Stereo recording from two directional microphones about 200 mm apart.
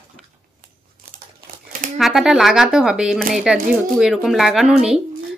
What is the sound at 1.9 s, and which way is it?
Speech, centre (ahead or behind).